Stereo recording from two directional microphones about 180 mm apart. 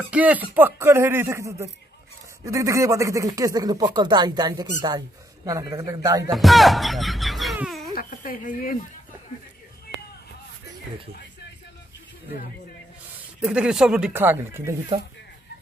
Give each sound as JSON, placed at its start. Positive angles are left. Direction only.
{"t": 0.1, "sound": "speech", "side_deg": -10}
{"t": 6.3, "sound": "music", "side_deg": 0}
{"t": 7.9, "sound": "a sound", "side_deg": 50}
{"t": 13.4, "sound": "speech", "side_deg": -5}